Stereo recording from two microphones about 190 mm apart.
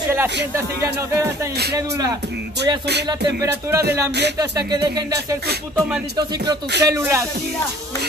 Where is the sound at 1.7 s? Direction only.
20° right (ahead or behind).